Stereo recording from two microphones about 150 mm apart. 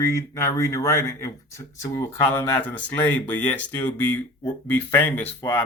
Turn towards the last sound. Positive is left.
turn(degrees=15)  # may be behind; listen again after turning